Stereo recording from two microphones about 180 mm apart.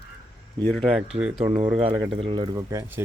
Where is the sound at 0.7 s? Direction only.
Centre (ahead or behind).